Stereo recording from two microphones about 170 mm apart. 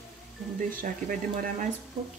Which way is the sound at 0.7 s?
55° right (ahead or behind).